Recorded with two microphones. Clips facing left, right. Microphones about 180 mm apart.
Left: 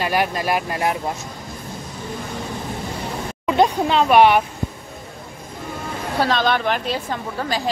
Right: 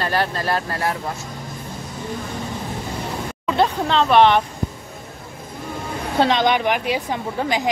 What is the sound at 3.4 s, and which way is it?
Speech, 15° left (ahead or behind).